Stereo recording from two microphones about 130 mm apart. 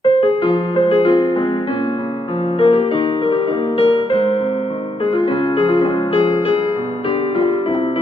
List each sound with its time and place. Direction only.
0.0 s music: 45° left (ahead or behind)
2.6 s music: 45° left (ahead or behind)
5.5 s music: 40° left (ahead or behind)